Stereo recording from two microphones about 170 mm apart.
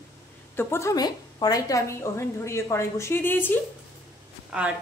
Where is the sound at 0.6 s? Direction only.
15° left (ahead or behind).